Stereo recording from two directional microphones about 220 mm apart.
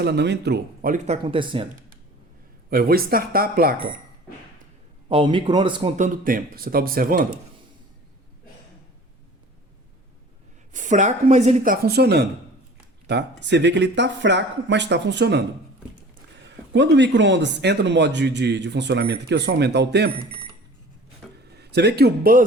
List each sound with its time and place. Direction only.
0.0 s speech: 50° right (ahead or behind); by 1.6 s 25° right (ahead or behind)
2.6 s speech: 45° right (ahead or behind)
5.0 s speech: 20° right (ahead or behind)
6.2 s speech: 40° right (ahead or behind)
10.7 s speech: 35° right (ahead or behind); by 15.4 s 50° right (ahead or behind)
16.7 s speech: 55° right (ahead or behind)
21.5 s a man's voice: 50° right (ahead or behind)